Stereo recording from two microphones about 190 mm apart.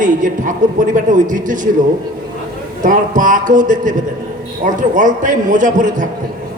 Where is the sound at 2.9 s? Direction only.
45° right (ahead or behind).